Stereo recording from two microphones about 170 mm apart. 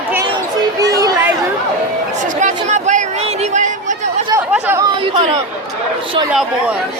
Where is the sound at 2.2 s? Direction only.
45° right (ahead or behind).